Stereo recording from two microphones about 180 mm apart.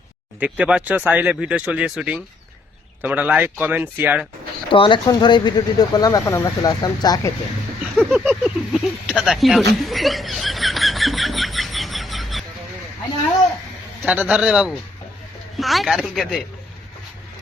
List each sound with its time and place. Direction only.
0.3 s speech: 10° right (ahead or behind)
4.7 s speech: 25° left (ahead or behind)
7.9 s a sound: 5° right (ahead or behind)
14.0 s speech: 5° right (ahead or behind)